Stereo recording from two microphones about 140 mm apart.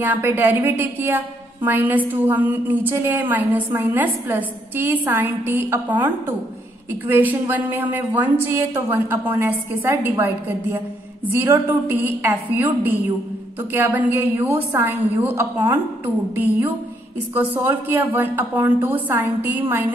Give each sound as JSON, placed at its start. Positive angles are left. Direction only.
{"t": 0.0, "sound": "a woman's voice", "side_deg": -15}
{"t": 17.3, "sound": "a woman's voice", "side_deg": -15}